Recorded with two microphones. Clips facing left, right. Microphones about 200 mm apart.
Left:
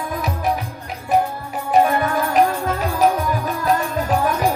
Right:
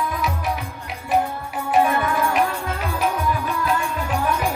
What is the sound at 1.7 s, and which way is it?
Music, 40° left (ahead or behind).